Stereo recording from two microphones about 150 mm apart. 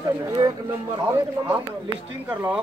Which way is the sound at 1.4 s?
15° right (ahead or behind).